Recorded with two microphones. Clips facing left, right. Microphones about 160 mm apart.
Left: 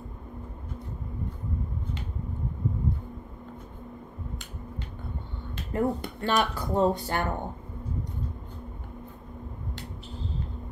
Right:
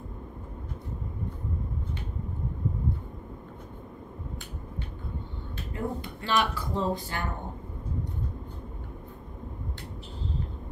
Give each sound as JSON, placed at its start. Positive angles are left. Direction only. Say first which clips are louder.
{"t": 5.7, "sound": "speech", "louder": "left 6 dB", "side_deg": 50}